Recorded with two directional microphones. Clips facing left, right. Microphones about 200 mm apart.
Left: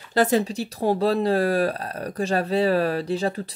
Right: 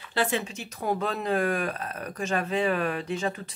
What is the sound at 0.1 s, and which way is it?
Speech, 40° left (ahead or behind).